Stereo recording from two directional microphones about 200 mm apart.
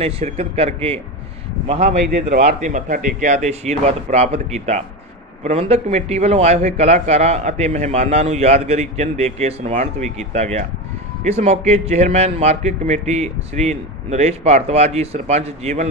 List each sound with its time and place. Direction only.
0.0 s speech: 30° right (ahead or behind)
2.4 s a man's voice: 40° right (ahead or behind)